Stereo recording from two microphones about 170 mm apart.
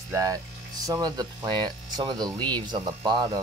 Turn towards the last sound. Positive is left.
turn(degrees=-25)  # may be behind; listen again after turning